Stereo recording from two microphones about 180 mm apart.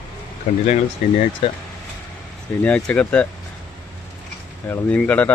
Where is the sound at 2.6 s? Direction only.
5° left (ahead or behind).